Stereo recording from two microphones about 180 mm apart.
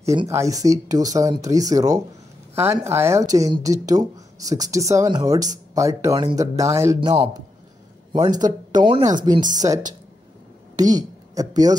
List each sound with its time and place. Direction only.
0.0 s a man's voice: 15° right (ahead or behind)